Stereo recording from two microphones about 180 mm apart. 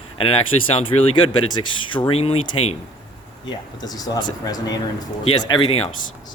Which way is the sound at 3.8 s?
20° left (ahead or behind).